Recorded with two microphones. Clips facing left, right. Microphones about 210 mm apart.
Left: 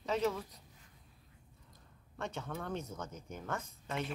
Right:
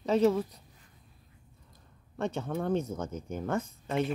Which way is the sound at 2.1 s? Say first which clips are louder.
Right 9 dB; 30° right (ahead or behind).